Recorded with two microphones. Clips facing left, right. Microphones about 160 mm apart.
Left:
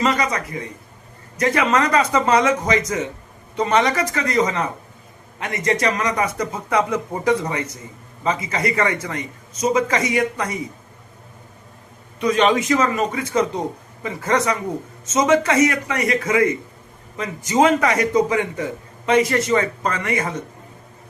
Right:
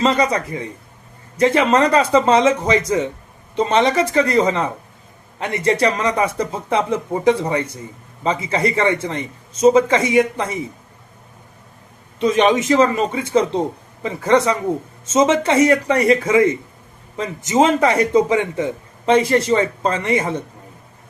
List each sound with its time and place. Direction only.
0.0 s a man's voice: 30° right (ahead or behind)
12.2 s a man's voice: 20° right (ahead or behind)